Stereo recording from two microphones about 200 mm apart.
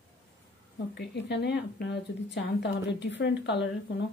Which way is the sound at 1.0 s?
60° left (ahead or behind).